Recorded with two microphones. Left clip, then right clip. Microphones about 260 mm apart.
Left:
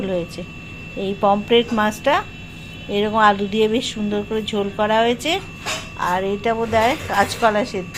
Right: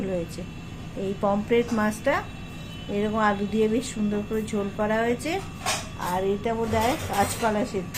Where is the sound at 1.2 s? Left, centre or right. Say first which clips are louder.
Left 8 dB; centre.